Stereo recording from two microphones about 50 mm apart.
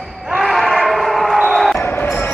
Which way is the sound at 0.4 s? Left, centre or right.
Centre.